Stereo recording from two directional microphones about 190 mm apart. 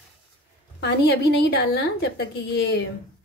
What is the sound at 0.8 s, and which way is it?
A woman's voice, 55° left (ahead or behind).